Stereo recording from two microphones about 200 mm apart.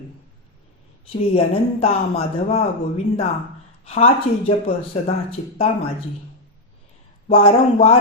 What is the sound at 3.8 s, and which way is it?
Speech, 30° left (ahead or behind).